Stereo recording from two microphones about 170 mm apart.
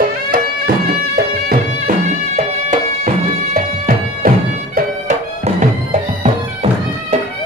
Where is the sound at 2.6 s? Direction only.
50° right (ahead or behind).